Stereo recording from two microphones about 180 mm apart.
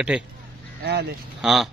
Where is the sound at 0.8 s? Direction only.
65° right (ahead or behind).